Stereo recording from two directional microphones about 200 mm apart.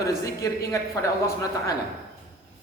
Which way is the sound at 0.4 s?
15° left (ahead or behind).